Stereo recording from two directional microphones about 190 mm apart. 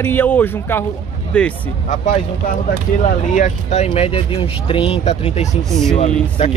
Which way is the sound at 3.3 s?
40° left (ahead or behind).